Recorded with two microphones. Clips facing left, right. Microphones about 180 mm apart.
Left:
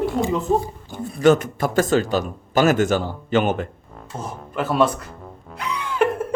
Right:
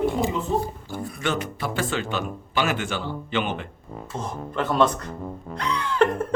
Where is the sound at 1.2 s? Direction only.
45° left (ahead or behind).